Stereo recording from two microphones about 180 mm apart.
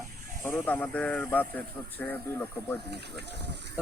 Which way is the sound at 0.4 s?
10° left (ahead or behind).